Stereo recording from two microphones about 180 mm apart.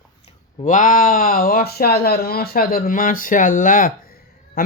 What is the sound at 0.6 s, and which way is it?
Speech, 45° left (ahead or behind).